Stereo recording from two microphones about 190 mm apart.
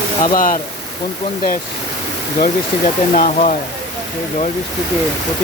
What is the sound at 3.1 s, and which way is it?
Speech, 40° left (ahead or behind).